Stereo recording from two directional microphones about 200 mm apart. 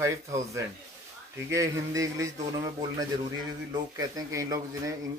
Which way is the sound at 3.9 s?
20° right (ahead or behind).